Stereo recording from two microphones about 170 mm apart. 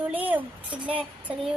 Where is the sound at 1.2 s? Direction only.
5° right (ahead or behind).